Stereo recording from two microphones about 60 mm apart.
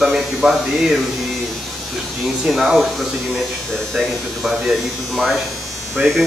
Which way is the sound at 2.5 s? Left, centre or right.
Centre.